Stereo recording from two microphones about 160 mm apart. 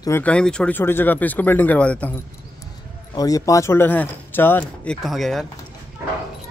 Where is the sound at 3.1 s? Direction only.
20° left (ahead or behind); by 5.5 s centre (ahead or behind).